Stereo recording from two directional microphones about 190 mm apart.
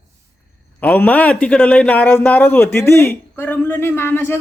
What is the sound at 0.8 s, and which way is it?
A man's voice, 10° left (ahead or behind).